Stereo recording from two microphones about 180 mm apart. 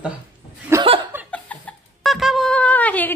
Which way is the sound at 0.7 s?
15° right (ahead or behind).